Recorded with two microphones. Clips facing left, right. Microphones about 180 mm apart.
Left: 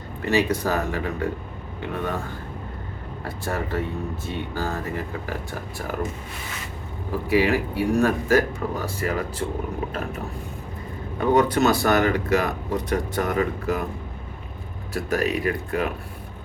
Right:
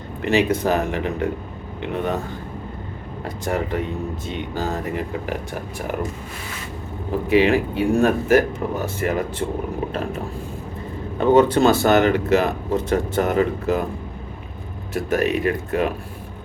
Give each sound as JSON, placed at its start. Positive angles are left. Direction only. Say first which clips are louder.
{"t": 0.2, "sound": "speech", "louder": "right 3 dB", "side_deg": -25}
{"t": 3.2, "sound": "speech", "louder": "right 4 dB", "side_deg": -15}
{"t": 7.3, "sound": "speech", "louder": "right 4 dB", "side_deg": -25}
{"t": 11.2, "sound": "speech", "louder": "right 4 dB", "side_deg": -25}
{"t": 14.9, "sound": "speech", "louder": "right 3 dB", "side_deg": -20}